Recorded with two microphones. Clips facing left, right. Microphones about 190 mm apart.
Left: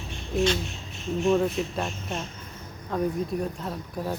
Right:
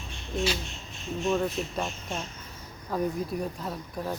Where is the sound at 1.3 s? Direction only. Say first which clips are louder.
Left 4 dB; 5° left (ahead or behind).